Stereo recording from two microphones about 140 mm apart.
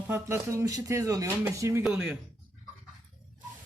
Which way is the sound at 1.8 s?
5° right (ahead or behind).